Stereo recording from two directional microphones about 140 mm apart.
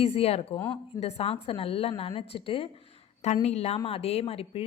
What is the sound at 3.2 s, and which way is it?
A woman's voice, 55° left (ahead or behind).